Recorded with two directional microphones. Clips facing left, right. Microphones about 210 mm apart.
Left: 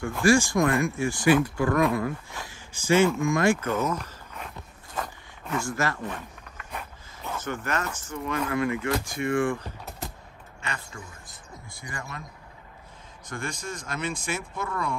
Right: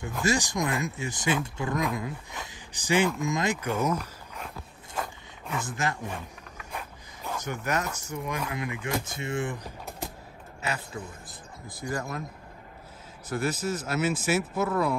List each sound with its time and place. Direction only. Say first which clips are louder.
0.2 s speech: left 7 dB; 20° right (ahead or behind)
5.6 s speech: left 2 dB; 20° right (ahead or behind)
7.2 s speech: even; 10° right (ahead or behind)
10.6 s speech: right 4 dB; 5° right (ahead or behind)
13.3 s speech: right 6 dB; 5° right (ahead or behind)